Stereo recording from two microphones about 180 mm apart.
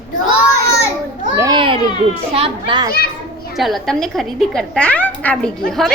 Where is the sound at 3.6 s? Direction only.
Centre (ahead or behind).